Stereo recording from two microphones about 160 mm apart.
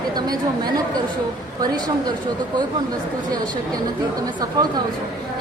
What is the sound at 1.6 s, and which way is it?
Speech, 25° right (ahead or behind).